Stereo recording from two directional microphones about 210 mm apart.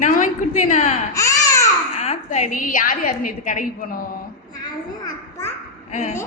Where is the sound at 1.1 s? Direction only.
15° left (ahead or behind).